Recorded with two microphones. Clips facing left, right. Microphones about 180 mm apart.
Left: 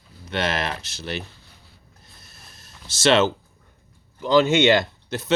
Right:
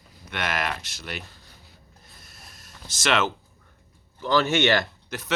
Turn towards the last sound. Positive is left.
turn(degrees=25)  # may be behind; listen again after turning